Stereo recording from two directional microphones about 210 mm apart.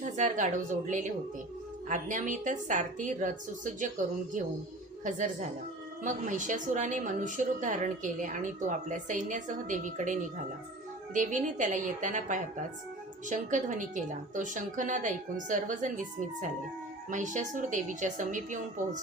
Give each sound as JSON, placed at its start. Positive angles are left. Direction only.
{"t": 0.0, "sound": "a woman's voice", "side_deg": -35}